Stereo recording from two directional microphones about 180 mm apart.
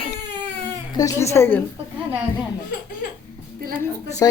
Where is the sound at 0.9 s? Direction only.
15° left (ahead or behind).